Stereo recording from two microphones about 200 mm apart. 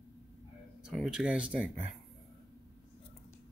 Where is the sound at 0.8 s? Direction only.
5° right (ahead or behind).